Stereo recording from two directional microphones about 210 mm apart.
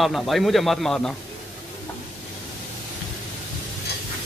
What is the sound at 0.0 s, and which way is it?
Speech, centre (ahead or behind).